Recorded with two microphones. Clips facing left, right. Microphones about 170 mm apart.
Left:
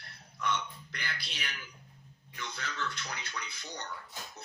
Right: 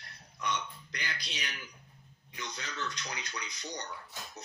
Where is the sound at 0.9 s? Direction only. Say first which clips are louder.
Right 1 dB; 15° right (ahead or behind).